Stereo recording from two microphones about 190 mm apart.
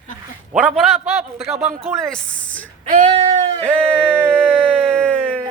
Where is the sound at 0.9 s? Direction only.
30° right (ahead or behind).